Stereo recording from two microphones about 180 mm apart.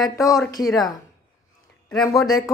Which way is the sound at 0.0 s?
20° left (ahead or behind).